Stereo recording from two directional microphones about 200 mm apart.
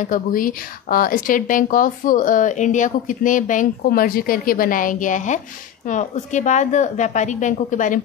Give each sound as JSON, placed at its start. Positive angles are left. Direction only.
{"t": 0.0, "sound": "a woman's voice", "side_deg": 45}